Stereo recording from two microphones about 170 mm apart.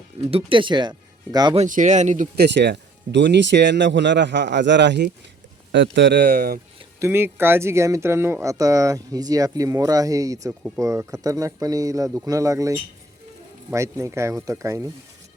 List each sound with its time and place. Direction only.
0.3 s speech: 35° right (ahead or behind)
1.5 s speech: 50° right (ahead or behind)
2.3 s a man's voice: 80° right; by 6.6 s 60° right (ahead or behind)
7.0 s speech: 15° right (ahead or behind)